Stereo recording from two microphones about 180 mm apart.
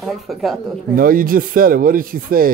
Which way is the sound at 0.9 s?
50° right (ahead or behind).